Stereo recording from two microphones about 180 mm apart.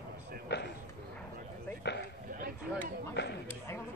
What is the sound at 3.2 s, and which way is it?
Speech, 75° left (ahead or behind).